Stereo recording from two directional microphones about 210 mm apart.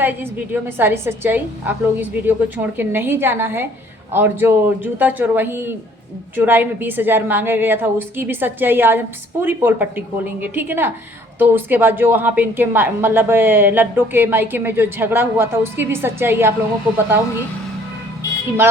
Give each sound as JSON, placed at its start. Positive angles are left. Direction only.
{"t": 0.0, "sound": "a woman's voice", "side_deg": -10}